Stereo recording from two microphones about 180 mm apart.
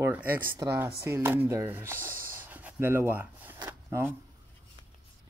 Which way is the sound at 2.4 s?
10° right (ahead or behind).